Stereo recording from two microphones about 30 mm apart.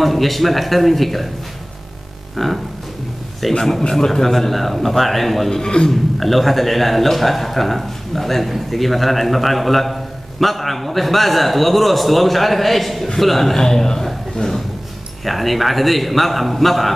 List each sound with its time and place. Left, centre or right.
0.0 s a man's voice: centre
2.3 s a sound: centre
3.4 s a man's voice: centre
5.5 s a man's voice: left
5.9 s a man's voice: centre
13.6 s a man's voice: centre
14.0 s a sound: centre
15.2 s a man's voice: centre